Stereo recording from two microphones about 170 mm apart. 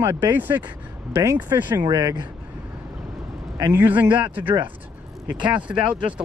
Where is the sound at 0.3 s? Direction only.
10° right (ahead or behind).